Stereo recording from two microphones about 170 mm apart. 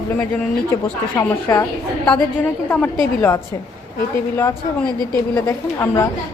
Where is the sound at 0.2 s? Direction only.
15° left (ahead or behind).